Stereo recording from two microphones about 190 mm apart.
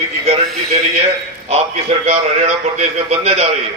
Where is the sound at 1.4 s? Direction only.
35° right (ahead or behind).